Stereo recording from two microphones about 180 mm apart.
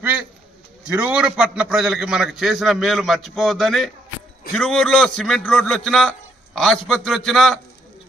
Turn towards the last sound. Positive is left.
turn(degrees=0)  # may be behind; listen again after turning